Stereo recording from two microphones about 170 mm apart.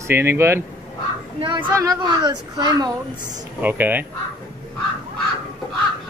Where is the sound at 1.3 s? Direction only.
30° right (ahead or behind).